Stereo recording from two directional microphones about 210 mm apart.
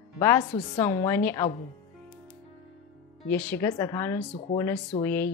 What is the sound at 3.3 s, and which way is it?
A woman's voice, 10° left (ahead or behind).